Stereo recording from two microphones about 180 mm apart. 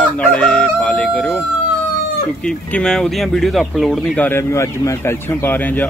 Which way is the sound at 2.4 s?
5° left (ahead or behind).